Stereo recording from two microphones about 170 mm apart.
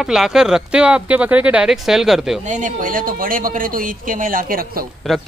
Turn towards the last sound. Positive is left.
turn(degrees=-60)  # may be behind; listen again after turning